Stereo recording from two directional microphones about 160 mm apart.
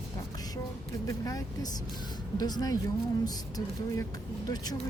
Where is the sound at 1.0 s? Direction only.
20° left (ahead or behind).